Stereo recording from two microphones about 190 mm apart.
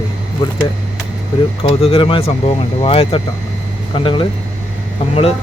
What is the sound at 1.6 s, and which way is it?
Speech, 30° left (ahead or behind).